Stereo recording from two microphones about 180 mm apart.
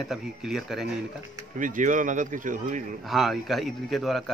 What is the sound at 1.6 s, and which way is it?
Speech, 45° right (ahead or behind).